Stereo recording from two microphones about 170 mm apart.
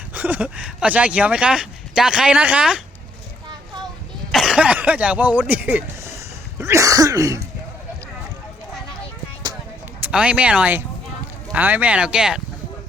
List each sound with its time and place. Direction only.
0.1 s speech: 10° right (ahead or behind)
4.3 s speech: centre (ahead or behind)
6.6 s cough: 15° right (ahead or behind)
10.1 s speech: 5° right (ahead or behind)